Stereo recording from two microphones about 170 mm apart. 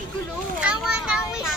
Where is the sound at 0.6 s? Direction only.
5° right (ahead or behind).